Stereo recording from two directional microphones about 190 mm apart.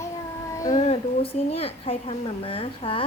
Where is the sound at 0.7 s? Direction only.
35° left (ahead or behind).